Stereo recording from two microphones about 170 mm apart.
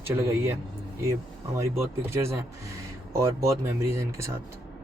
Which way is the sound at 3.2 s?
15° right (ahead or behind).